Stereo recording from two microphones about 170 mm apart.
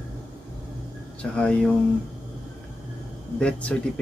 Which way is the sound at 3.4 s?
5° left (ahead or behind).